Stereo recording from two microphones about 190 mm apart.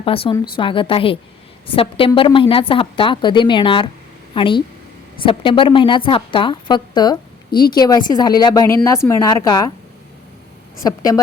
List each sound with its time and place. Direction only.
0.0 s a woman's voice: 30° left (ahead or behind)
10.8 s a woman's voice: 20° left (ahead or behind)